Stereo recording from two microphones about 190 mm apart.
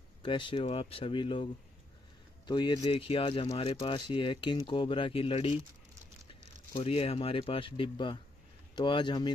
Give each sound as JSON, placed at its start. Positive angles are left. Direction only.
{"t": 0.2, "sound": "speech", "side_deg": 25}
{"t": 6.7, "sound": "speech", "side_deg": 30}